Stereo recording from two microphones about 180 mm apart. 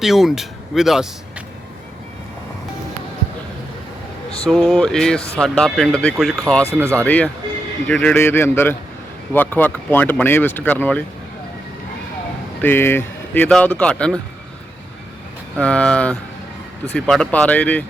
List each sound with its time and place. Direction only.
0.0 s speech: centre (ahead or behind)
4.4 s speech: centre (ahead or behind)
12.6 s speech: 10° left (ahead or behind)
15.5 s speech: 5° left (ahead or behind)